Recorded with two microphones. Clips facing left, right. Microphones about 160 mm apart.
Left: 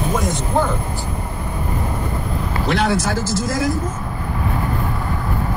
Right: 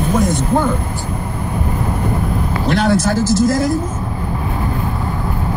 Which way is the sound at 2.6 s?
45° right (ahead or behind).